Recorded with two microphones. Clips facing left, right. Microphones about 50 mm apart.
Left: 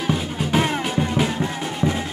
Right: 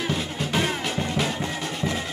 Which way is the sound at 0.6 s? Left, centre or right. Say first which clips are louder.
Left 5 dB; left.